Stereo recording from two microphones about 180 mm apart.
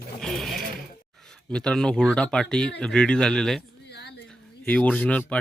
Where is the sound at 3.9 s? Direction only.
65° left (ahead or behind).